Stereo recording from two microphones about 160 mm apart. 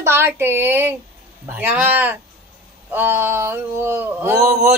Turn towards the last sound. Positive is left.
turn(degrees=-15)  # may be behind; listen again after turning